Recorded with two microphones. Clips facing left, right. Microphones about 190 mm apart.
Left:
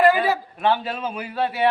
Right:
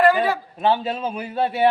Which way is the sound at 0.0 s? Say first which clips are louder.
Even; 5° left (ahead or behind).